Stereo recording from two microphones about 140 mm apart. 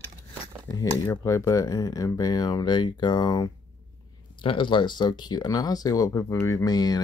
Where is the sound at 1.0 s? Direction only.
20° left (ahead or behind).